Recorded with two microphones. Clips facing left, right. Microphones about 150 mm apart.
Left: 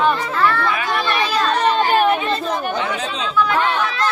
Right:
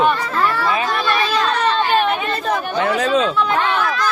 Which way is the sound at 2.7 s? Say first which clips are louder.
Right 4 dB; 60° right (ahead or behind).